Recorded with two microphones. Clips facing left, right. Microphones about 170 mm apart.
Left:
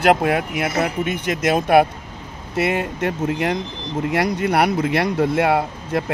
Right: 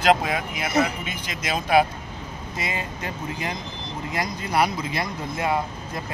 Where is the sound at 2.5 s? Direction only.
70° left (ahead or behind).